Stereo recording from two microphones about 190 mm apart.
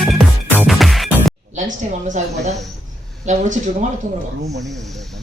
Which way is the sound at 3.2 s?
40° right (ahead or behind).